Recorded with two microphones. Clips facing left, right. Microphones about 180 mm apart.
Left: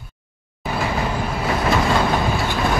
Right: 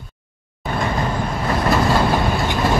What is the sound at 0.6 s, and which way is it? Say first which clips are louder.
Train: right 1 dB; 5° left (ahead or behind).